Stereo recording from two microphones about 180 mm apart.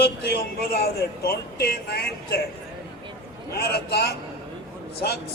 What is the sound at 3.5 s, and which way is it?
Speech, 65° left (ahead or behind).